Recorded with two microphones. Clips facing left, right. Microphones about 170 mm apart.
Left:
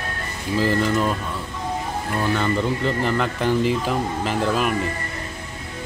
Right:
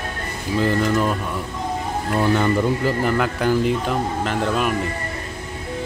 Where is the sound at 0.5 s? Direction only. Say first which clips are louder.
Right 1 dB; centre (ahead or behind).